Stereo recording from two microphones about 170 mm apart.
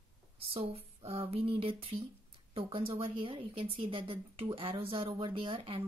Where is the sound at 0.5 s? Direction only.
35° right (ahead or behind).